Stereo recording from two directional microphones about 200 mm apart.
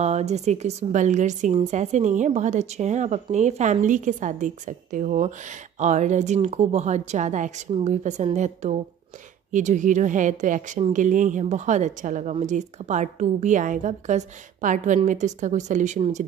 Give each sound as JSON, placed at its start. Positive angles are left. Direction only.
{"t": 0.0, "sound": "a woman's voice", "side_deg": -35}